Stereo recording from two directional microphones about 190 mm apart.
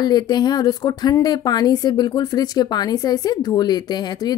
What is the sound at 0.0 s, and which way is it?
Speech, 20° left (ahead or behind).